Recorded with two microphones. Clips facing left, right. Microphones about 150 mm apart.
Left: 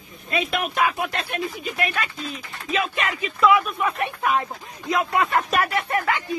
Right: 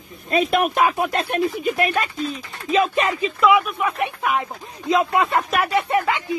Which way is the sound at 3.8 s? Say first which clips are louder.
Right 2 dB; 10° right (ahead or behind).